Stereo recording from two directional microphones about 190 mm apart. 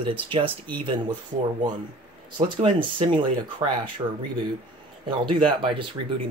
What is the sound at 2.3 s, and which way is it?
Speech, 25° right (ahead or behind).